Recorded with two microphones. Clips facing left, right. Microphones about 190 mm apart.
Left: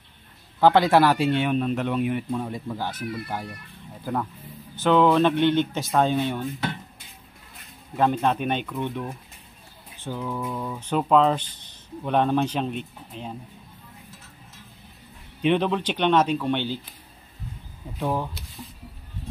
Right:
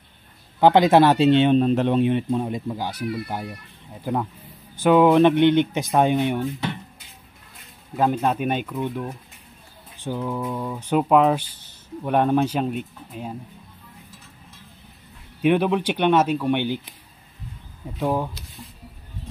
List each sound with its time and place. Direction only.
0.6 s speech: 20° right (ahead or behind)
7.9 s speech: 5° right (ahead or behind)
15.4 s speech: 10° right (ahead or behind)
17.9 s speech: 10° right (ahead or behind)